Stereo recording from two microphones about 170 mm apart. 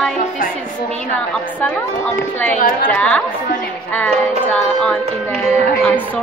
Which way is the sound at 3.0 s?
5° left (ahead or behind).